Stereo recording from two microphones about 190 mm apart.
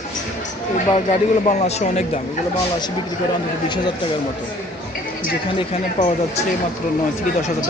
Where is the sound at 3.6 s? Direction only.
25° left (ahead or behind).